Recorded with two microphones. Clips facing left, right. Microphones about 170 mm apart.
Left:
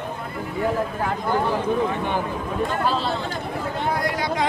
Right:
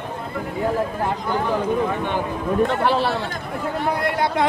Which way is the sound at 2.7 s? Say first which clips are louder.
Right 3 dB; 70° right (ahead or behind).